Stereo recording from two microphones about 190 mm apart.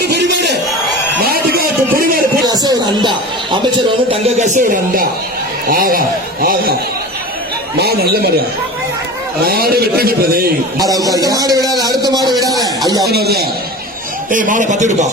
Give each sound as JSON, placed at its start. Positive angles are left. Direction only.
{"t": 0.1, "sound": "crowd", "side_deg": -60}
{"t": 1.2, "sound": "a sound", "side_deg": -55}
{"t": 2.5, "sound": "speech", "side_deg": -20}
{"t": 4.1, "sound": "speech", "side_deg": -40}
{"t": 7.8, "sound": "speech", "side_deg": -55}
{"t": 9.4, "sound": "speech", "side_deg": -55}
{"t": 10.8, "sound": "speech", "side_deg": -20}
{"t": 11.8, "sound": "a sound", "side_deg": -20}
{"t": 13.1, "sound": "speech", "side_deg": -55}
{"t": 14.3, "sound": "speech", "side_deg": -45}